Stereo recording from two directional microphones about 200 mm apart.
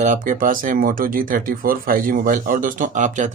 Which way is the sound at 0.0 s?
40° right (ahead or behind).